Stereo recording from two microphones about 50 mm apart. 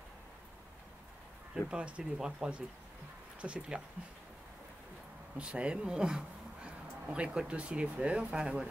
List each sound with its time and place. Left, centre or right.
1.5 s speech: centre
5.4 s speech: right